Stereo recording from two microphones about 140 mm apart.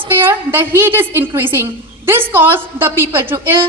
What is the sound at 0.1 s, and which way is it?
A woman's voice, 15° right (ahead or behind).